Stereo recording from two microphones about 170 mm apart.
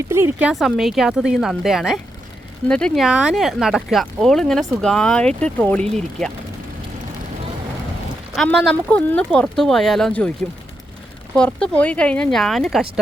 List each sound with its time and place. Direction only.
0.1 s speech: 15° right (ahead or behind); by 6.3 s 5° left (ahead or behind)
8.4 s speech: 5° left (ahead or behind)
11.3 s speech: 5° left (ahead or behind)